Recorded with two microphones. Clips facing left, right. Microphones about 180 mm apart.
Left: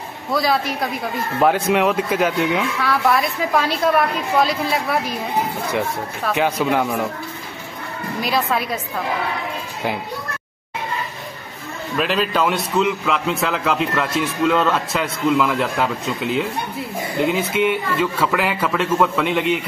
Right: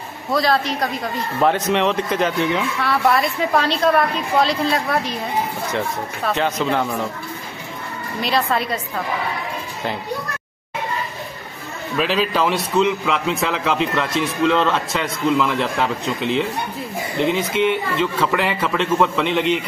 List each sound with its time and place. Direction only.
0.3 s a man's voice: centre (ahead or behind)
6.3 s speech: 10° left (ahead or behind)
8.2 s a man's voice: centre (ahead or behind)
12.0 s a man's voice: centre (ahead or behind)